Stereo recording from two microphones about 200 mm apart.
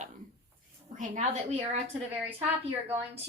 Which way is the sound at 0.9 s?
35° right (ahead or behind).